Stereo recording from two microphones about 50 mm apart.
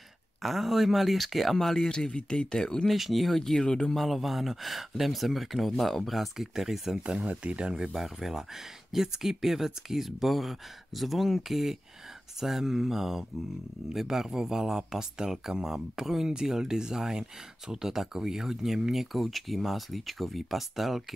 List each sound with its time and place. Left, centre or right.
0.4 s speech: centre
1.9 s speech: centre
2.9 s speech: centre
3.6 s speech: centre
3.9 s speech: centre
7.0 s speech: right; by 21.0 s centre